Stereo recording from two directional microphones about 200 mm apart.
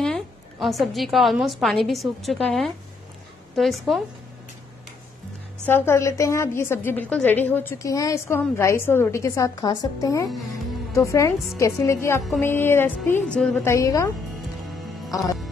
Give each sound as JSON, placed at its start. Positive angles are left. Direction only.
{"t": 0.0, "sound": "a woman's voice", "side_deg": 0}
{"t": 5.7, "sound": "a woman's voice", "side_deg": 15}